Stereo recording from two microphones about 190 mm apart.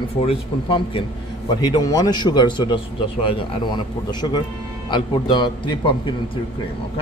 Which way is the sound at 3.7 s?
25° left (ahead or behind).